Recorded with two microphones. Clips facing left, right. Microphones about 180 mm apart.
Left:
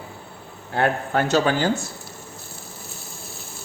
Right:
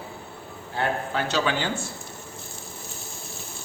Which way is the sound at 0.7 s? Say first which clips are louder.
Left 5 dB; 55° left (ahead or behind).